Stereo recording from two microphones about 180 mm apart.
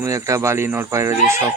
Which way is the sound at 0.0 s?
15° right (ahead or behind).